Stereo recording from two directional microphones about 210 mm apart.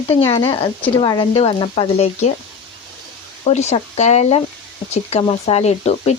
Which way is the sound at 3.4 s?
30° left (ahead or behind).